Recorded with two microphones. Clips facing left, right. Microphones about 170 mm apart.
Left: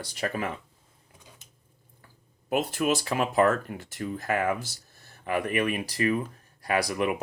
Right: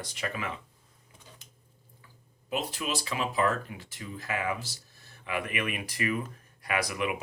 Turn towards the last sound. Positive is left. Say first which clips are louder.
# left 4 dB
turn(degrees=40)  # may be behind; listen again after turning